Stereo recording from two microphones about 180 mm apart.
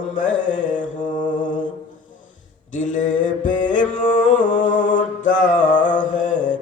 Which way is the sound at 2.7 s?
45° left (ahead or behind).